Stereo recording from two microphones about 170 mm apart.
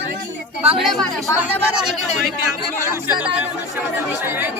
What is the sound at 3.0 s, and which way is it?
Speech, 10° right (ahead or behind).